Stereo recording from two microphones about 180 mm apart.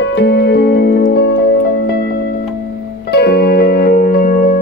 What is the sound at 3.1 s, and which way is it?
Music, 65° left (ahead or behind).